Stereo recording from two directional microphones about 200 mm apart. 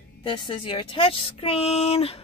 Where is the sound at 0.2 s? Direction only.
25° left (ahead or behind).